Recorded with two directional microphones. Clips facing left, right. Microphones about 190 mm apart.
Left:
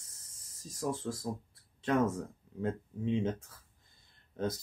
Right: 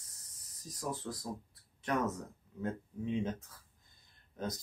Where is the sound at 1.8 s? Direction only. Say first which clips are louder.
Left 5 dB; 25° left (ahead or behind).